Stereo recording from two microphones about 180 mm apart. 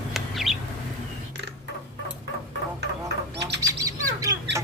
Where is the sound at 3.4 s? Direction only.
70° right (ahead or behind).